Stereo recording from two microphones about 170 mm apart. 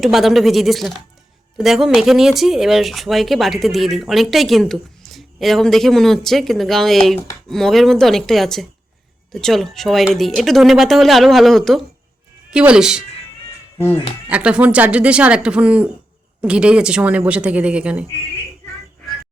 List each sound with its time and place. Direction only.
0.0 s speech: centre (ahead or behind)
14.3 s speech: 10° right (ahead or behind)